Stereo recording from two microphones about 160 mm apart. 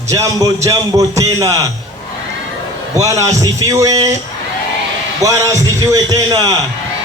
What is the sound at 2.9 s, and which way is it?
Speech, 20° right (ahead or behind).